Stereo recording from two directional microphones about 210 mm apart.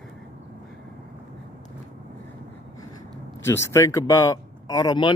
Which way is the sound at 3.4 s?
10° left (ahead or behind).